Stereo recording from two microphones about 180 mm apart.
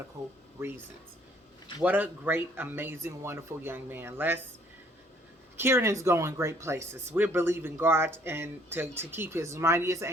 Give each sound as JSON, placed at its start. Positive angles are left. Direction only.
{"t": 0.2, "sound": "speech", "side_deg": -35}
{"t": 0.6, "sound": "speech", "side_deg": -15}
{"t": 1.8, "sound": "speech", "side_deg": -10}
{"t": 5.5, "sound": "speech", "side_deg": -15}